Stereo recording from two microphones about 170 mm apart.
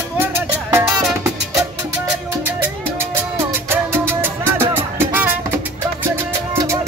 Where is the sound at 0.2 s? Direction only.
15° right (ahead or behind).